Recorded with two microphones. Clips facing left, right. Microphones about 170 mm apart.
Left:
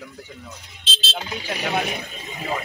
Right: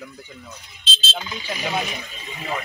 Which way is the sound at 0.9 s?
70° left (ahead or behind).